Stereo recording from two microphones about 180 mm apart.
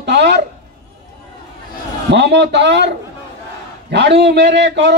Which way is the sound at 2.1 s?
70° right (ahead or behind).